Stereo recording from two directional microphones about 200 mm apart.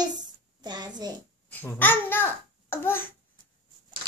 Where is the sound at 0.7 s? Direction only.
20° right (ahead or behind).